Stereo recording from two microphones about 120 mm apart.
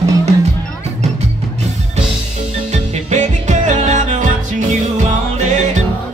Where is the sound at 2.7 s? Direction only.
75° right (ahead or behind).